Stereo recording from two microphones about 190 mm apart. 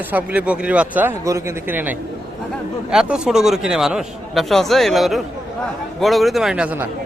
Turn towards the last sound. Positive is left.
turn(degrees=-10)  # may be behind; listen again after turning